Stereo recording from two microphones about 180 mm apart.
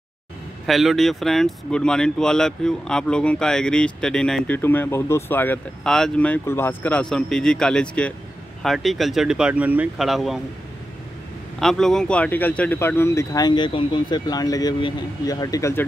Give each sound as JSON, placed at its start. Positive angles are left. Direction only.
{"t": 0.7, "sound": "speech", "side_deg": 0}
{"t": 11.6, "sound": "speech", "side_deg": 0}